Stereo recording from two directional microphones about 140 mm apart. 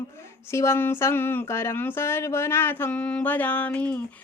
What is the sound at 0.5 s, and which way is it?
Speech, 20° left (ahead or behind).